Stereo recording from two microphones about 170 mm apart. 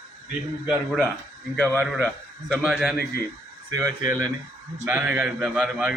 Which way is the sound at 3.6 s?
20° right (ahead or behind).